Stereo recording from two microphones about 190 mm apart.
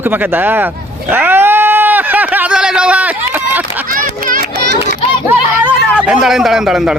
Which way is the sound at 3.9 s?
45° right (ahead or behind).